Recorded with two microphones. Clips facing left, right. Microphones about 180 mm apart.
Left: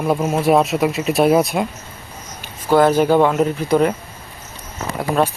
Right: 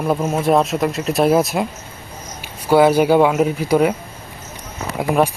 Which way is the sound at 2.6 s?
10° right (ahead or behind).